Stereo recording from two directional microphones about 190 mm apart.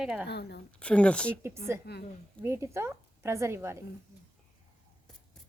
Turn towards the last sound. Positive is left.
turn(degrees=-15)  # may be behind; listen again after turning